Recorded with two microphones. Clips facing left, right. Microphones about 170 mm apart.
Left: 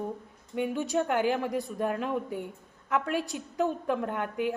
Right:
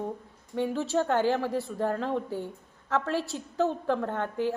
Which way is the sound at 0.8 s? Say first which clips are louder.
Right 2 dB; 15° left (ahead or behind).